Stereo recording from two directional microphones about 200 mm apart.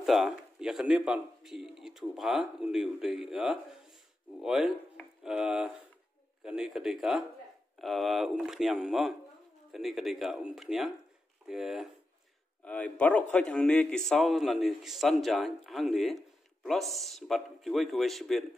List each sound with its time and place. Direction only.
0.0 s a man's voice: centre (ahead or behind)